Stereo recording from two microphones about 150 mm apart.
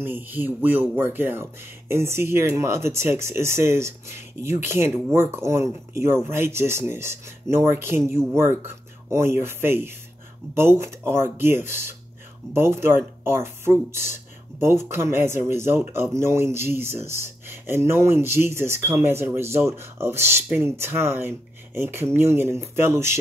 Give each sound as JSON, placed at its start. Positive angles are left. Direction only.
{"t": 0.0, "sound": "speech", "side_deg": -15}